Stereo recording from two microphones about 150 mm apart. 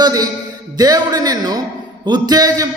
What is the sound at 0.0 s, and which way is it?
A man's voice, 25° right (ahead or behind).